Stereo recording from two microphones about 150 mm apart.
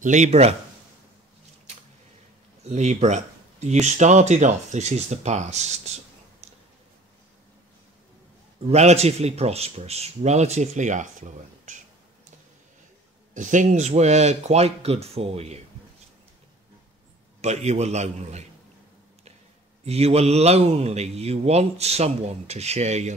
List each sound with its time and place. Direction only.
0.0 s a man's voice: 50° right (ahead or behind)
2.6 s a man's voice: 50° right (ahead or behind)
8.6 s a man's voice: 45° right (ahead or behind)
13.3 s a man's voice: 55° right (ahead or behind)
17.4 s a man's voice: 45° right (ahead or behind)
19.8 s a man's voice: 45° right (ahead or behind)